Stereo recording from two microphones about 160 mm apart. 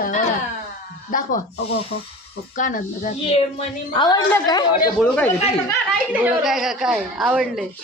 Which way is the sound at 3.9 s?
25° left (ahead or behind).